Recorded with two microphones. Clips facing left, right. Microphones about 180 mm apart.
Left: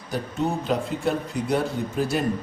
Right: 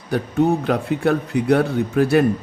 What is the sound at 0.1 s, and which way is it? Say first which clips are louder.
Speech: right 8 dB; 65° right (ahead or behind).